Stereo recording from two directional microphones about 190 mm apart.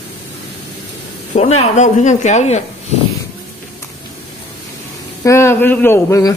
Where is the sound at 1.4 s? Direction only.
35° left (ahead or behind).